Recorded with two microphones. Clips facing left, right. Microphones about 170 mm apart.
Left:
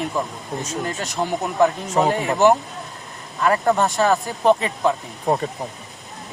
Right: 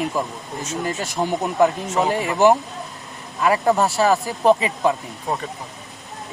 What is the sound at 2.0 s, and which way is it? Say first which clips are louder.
Speech: left 2 dB; 35° left (ahead or behind).